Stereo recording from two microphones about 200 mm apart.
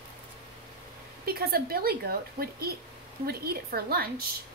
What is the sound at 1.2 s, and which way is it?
A woman's voice, 50° right (ahead or behind).